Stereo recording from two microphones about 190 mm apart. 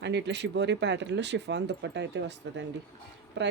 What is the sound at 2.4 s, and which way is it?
Speech, 80° right.